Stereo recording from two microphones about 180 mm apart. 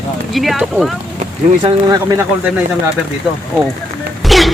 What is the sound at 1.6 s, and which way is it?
Speech, 20° right (ahead or behind).